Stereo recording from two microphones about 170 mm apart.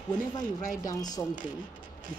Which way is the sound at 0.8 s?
20° left (ahead or behind).